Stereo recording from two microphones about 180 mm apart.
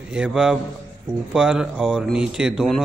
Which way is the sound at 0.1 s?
5° right (ahead or behind).